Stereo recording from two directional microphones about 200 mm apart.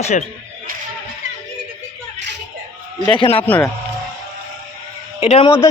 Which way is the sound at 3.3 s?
10° left (ahead or behind).